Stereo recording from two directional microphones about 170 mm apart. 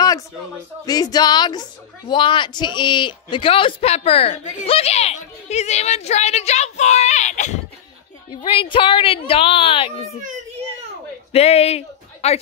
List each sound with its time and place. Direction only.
0.8 s speech: 20° left (ahead or behind); by 7.6 s 45° left (ahead or behind)
8.5 s speech: 30° left (ahead or behind)
11.3 s speech: 40° left (ahead or behind)